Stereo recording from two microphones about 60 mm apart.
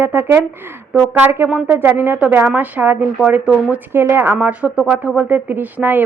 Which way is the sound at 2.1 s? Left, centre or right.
Right.